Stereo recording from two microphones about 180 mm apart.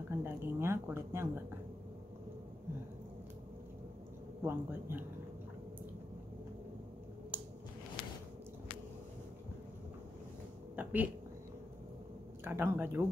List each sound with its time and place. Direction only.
0.1 s speech: 15° right (ahead or behind)
4.5 s speech: 15° right (ahead or behind)
7.3 s a sound: 10° right (ahead or behind)
10.8 s speech: 10° right (ahead or behind)
12.4 s speech: 10° right (ahead or behind)